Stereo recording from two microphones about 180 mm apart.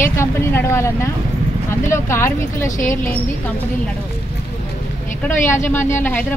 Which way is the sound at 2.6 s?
45° left (ahead or behind).